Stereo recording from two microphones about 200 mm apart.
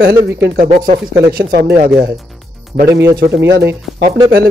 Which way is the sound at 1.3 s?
45° right (ahead or behind).